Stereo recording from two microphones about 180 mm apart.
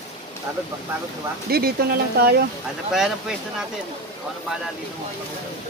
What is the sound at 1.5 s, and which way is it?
Speech, 60° right (ahead or behind).